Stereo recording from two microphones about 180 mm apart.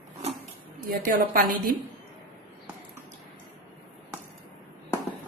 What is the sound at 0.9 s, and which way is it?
Speech, 50° right (ahead or behind).